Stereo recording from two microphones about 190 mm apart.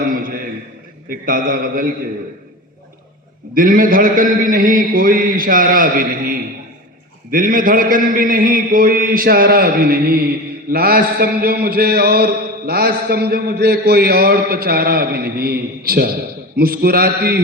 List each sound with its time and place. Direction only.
0.1 s a sound: 50° right (ahead or behind)
1.1 s a man's voice: 50° right (ahead or behind)
3.5 s a man's voice: 45° right (ahead or behind)